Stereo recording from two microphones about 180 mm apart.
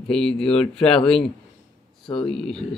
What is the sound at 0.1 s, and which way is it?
Speech, 5° left (ahead or behind).